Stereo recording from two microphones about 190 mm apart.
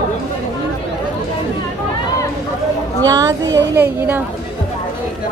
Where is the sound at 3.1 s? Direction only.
20° right (ahead or behind).